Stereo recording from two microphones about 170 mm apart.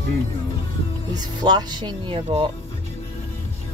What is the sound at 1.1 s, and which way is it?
Speech, 25° right (ahead or behind).